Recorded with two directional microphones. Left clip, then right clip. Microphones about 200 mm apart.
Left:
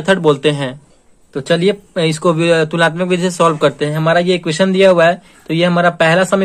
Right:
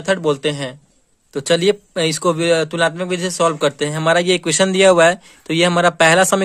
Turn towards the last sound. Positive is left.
turn(degrees=-45)  # may be behind; listen again after turning